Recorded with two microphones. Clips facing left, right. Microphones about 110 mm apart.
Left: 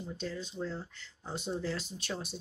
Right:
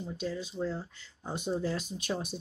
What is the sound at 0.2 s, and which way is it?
Speech, 10° right (ahead or behind).